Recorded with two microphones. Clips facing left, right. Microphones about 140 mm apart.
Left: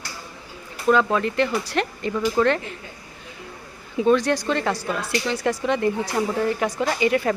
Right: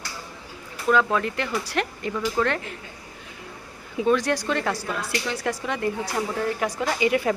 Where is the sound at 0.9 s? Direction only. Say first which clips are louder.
Left 3 dB; 5° right (ahead or behind).